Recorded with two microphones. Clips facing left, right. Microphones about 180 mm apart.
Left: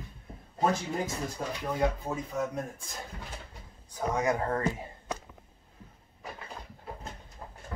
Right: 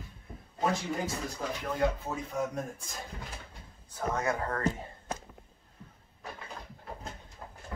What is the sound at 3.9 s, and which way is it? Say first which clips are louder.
Speech: left 3 dB; 15° left (ahead or behind).